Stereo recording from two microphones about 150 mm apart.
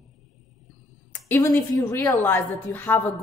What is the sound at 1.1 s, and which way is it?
A woman's voice, 15° left (ahead or behind).